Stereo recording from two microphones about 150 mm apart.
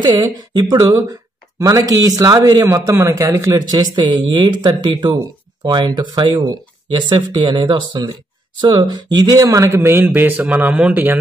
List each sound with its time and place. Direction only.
0.0 s speech: 25° right (ahead or behind); by 11.1 s 10° right (ahead or behind)